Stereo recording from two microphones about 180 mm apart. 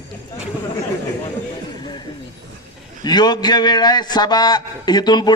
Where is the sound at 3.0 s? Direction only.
25° left (ahead or behind).